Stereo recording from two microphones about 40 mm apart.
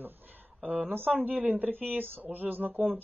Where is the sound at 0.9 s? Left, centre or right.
Right.